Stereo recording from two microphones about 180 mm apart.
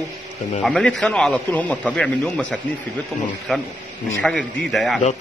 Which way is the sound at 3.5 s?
Centre (ahead or behind).